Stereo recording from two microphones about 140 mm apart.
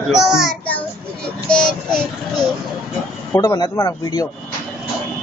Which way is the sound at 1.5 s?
5° left (ahead or behind).